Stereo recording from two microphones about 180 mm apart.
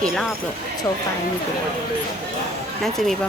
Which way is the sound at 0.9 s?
20° left (ahead or behind).